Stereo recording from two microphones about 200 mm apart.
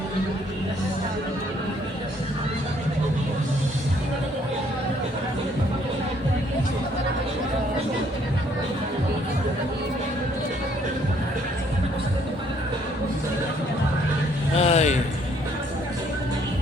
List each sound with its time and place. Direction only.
14.6 s vehicle: 30° left (ahead or behind)